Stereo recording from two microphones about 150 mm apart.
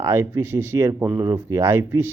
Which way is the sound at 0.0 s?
15° right (ahead or behind).